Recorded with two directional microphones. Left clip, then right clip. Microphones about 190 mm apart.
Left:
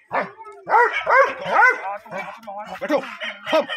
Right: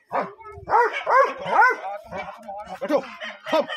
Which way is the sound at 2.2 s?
10° left (ahead or behind).